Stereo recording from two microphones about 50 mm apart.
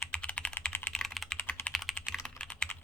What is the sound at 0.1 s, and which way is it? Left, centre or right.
Typing, left.